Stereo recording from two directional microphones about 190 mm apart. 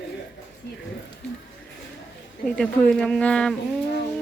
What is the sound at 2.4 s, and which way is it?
Speech, 5° left (ahead or behind).